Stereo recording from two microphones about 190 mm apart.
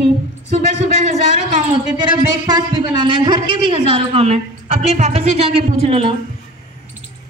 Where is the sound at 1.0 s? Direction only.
40° right (ahead or behind).